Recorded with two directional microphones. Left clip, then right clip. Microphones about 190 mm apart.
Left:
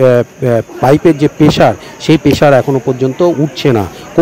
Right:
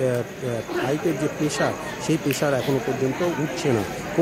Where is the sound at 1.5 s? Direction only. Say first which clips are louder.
Left 15 dB; 45° left (ahead or behind).